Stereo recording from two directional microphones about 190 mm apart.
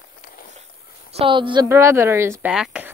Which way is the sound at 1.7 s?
15° right (ahead or behind).